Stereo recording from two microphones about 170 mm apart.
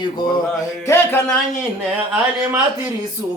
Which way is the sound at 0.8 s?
15° left (ahead or behind).